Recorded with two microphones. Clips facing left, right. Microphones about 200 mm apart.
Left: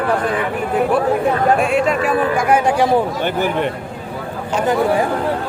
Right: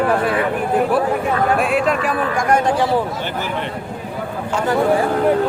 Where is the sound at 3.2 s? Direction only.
55° left (ahead or behind).